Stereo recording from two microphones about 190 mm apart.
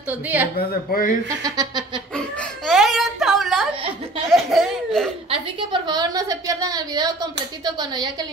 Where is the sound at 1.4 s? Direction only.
20° right (ahead or behind).